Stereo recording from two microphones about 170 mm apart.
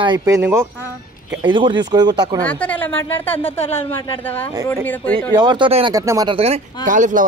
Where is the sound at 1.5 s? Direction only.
30° right (ahead or behind).